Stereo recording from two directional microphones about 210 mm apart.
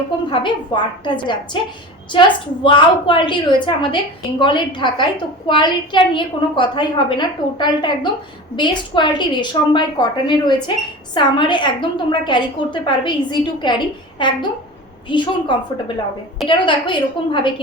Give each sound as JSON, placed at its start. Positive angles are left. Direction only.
{"t": 0.3, "sound": "a woman's voice", "side_deg": 20}